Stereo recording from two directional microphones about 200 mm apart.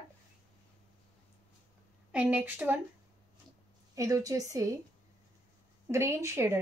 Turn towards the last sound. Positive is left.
turn(degrees=-15)  # may be behind; listen again after turning